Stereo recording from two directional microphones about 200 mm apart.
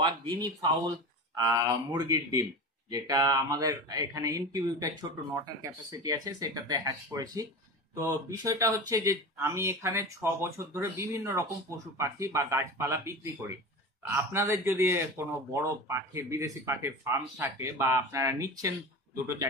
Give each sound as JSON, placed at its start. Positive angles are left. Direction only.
{"t": 0.0, "sound": "speech", "side_deg": -20}